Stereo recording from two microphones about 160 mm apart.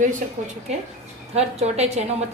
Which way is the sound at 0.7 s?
45° right (ahead or behind).